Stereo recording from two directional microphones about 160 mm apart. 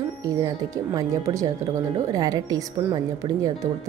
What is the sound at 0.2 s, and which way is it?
A woman's voice, 20° right (ahead or behind).